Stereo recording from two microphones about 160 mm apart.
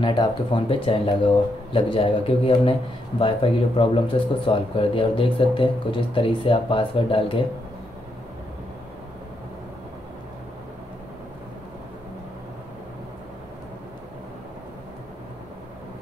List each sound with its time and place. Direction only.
0.0 s speech: 30° left (ahead or behind)